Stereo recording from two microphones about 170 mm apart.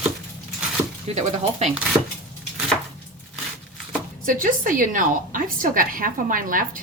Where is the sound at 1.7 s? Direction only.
5° right (ahead or behind).